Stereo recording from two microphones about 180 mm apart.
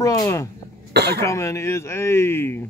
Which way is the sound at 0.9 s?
65° right (ahead or behind).